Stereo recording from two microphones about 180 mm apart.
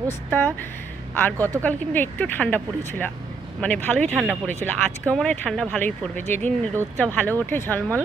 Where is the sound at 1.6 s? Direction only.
10° left (ahead or behind).